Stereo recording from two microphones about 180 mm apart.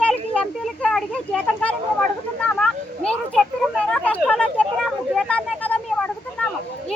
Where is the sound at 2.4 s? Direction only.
5° left (ahead or behind).